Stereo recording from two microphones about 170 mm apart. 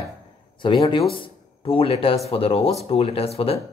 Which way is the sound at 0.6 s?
30° left (ahead or behind).